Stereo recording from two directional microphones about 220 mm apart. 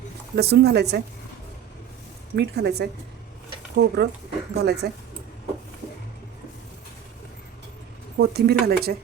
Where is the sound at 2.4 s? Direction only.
50° right (ahead or behind).